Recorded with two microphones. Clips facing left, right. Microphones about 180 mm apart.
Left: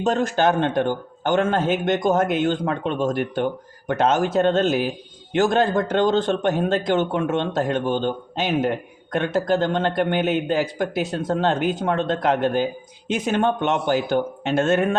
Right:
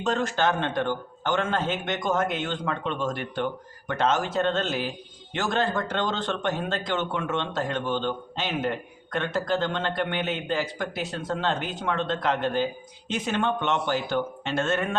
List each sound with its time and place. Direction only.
0.0 s a man's voice: 45° left (ahead or behind)